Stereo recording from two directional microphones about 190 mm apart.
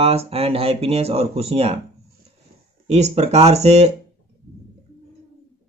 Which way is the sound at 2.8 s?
35° right (ahead or behind).